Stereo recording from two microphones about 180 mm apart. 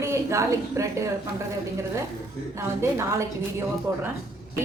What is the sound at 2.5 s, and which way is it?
A woman's voice, 15° right (ahead or behind).